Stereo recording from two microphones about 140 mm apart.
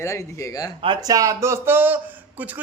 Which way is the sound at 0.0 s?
20° left (ahead or behind).